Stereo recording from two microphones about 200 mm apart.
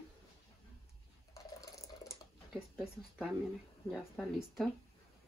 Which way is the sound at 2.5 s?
Centre (ahead or behind).